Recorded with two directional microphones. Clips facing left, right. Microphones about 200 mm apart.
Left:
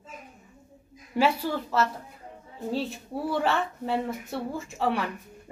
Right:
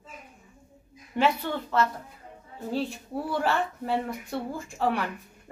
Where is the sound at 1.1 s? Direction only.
10° left (ahead or behind).